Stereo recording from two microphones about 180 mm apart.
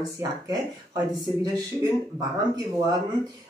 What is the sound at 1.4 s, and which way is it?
Speech, 20° right (ahead or behind).